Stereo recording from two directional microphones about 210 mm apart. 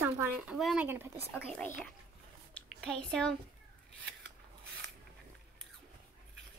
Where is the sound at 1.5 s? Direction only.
5° left (ahead or behind).